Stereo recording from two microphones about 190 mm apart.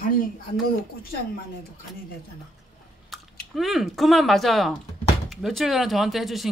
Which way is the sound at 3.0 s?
Centre (ahead or behind).